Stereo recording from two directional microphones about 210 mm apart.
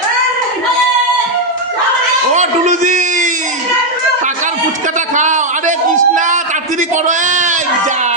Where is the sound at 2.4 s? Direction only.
35° right (ahead or behind).